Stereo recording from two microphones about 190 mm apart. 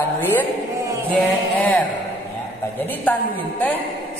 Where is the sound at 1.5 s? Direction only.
10° left (ahead or behind).